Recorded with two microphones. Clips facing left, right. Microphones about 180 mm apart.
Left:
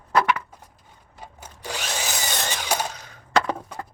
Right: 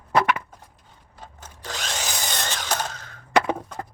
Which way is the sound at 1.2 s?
10° left (ahead or behind).